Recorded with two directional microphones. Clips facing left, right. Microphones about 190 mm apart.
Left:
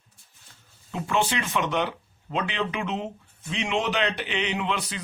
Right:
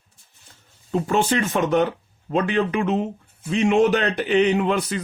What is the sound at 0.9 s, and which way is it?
A man's voice, 40° right (ahead or behind).